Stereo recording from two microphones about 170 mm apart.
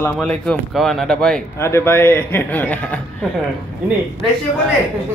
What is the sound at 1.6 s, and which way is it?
Speech, 15° left (ahead or behind).